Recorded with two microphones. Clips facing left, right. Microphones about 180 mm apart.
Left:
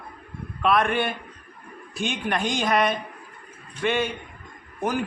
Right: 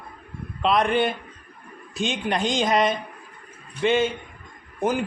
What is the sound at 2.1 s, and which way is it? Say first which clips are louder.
Speech: right 1 dB; 20° right (ahead or behind).